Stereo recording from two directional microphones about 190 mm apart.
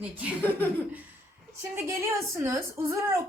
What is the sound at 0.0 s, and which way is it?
Speech, 5° right (ahead or behind).